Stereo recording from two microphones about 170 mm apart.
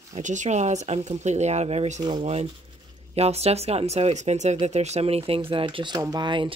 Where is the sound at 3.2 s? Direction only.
40° right (ahead or behind).